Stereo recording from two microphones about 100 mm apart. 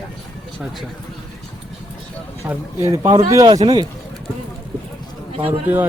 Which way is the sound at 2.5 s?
30° right (ahead or behind).